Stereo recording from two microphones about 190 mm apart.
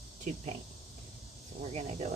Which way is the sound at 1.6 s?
35° right (ahead or behind).